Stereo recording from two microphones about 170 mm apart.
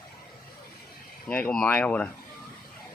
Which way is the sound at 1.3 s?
10° left (ahead or behind).